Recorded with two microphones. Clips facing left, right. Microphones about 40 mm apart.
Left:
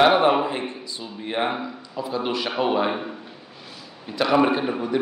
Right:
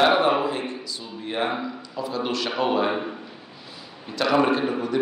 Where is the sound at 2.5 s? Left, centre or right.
Centre.